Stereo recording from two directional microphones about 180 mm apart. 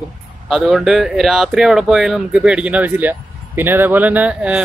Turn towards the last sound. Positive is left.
turn(degrees=-5)  # may be behind; listen again after turning